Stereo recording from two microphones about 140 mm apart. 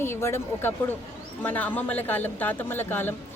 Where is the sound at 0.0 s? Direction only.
20° left (ahead or behind).